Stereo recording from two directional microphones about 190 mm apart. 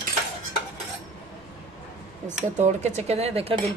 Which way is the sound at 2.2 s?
40° right (ahead or behind).